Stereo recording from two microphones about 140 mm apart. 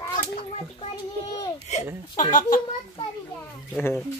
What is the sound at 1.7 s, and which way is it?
Chuckle, 70° left (ahead or behind).